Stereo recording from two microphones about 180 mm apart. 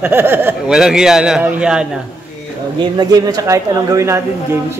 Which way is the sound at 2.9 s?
20° right (ahead or behind).